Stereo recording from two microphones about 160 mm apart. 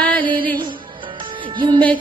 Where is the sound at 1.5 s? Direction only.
30° right (ahead or behind).